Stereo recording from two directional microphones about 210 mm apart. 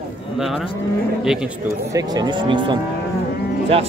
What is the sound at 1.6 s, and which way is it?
Cattle, 15° right (ahead or behind).